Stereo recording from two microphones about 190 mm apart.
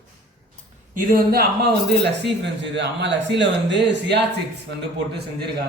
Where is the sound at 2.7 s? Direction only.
65° right (ahead or behind).